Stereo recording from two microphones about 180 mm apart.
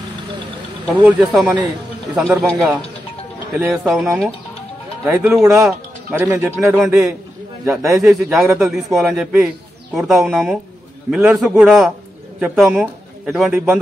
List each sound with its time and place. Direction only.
0.8 s speech: centre (ahead or behind)
3.5 s speech: centre (ahead or behind)
6.1 s speech: 10° right (ahead or behind)
7.7 s speech: 15° right (ahead or behind)
8.1 s speech: centre (ahead or behind)